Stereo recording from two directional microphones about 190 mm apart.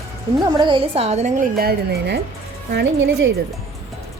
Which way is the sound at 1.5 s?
55° right (ahead or behind).